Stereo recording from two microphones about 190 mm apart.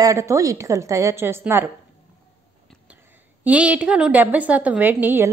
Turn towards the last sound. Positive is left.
turn(degrees=-10)  # may be behind; listen again after turning